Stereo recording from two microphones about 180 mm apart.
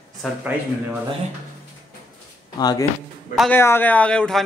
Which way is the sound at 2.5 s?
20° left (ahead or behind).